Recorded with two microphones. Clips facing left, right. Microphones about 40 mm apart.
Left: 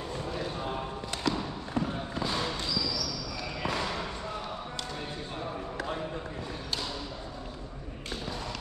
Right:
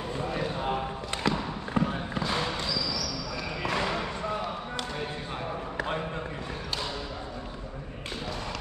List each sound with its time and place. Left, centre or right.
0.3 s basketball bounce: right
1.3 s a sound: right
3.7 s basketball bounce: right